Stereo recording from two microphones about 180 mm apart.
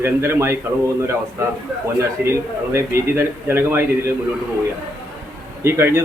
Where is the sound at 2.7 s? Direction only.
15° right (ahead or behind).